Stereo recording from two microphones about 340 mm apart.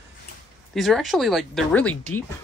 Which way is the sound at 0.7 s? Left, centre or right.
Centre.